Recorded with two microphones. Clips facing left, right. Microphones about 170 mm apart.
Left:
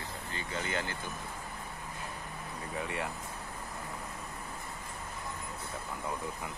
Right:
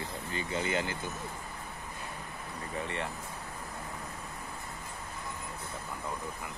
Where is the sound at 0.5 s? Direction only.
10° right (ahead or behind).